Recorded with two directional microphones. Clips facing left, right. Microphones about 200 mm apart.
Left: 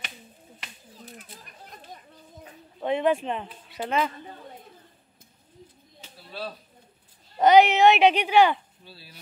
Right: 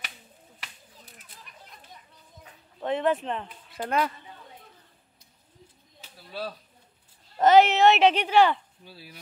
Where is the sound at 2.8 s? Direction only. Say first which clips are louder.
Left 2 dB; 10° left (ahead or behind).